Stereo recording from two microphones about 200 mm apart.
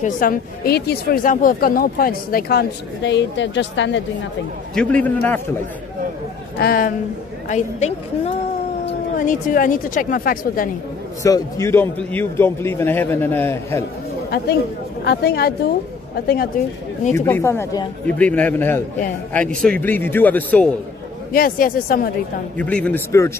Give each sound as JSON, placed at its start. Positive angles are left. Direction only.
{"t": 0.0, "sound": "speech", "side_deg": 45}
{"t": 4.7, "sound": "a man's voice", "side_deg": 5}
{"t": 6.6, "sound": "speech", "side_deg": 45}
{"t": 11.2, "sound": "a man's voice", "side_deg": 15}
{"t": 15.0, "sound": "speech", "side_deg": 55}
{"t": 17.1, "sound": "a man's voice", "side_deg": 15}
{"t": 21.3, "sound": "speech", "side_deg": 45}
{"t": 22.6, "sound": "a man's voice", "side_deg": 5}